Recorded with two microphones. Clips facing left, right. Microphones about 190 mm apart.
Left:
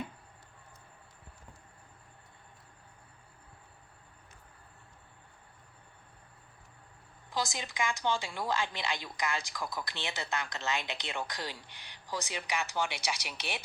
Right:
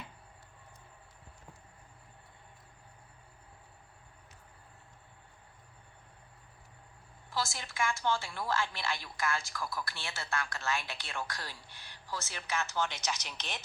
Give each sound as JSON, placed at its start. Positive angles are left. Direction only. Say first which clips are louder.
{"t": 7.3, "sound": "a woman's voice", "louder": "left 2 dB", "side_deg": 15}